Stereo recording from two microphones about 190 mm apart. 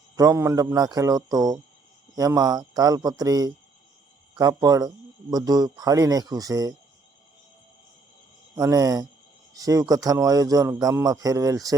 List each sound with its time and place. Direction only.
0.2 s a man's voice: 15° right (ahead or behind)
8.5 s a man's voice: 15° right (ahead or behind)